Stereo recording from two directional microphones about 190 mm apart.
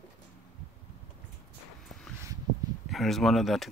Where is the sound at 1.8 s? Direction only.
Centre (ahead or behind).